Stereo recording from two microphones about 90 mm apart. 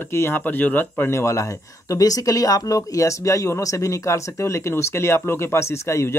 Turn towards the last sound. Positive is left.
turn(degrees=30)  # may be behind; listen again after turning